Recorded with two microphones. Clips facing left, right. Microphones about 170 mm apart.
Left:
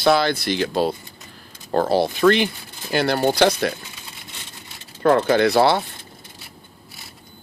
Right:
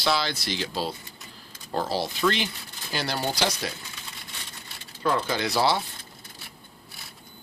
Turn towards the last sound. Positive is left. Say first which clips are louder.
# left 8 dB
turn(degrees=60)  # may be behind; listen again after turning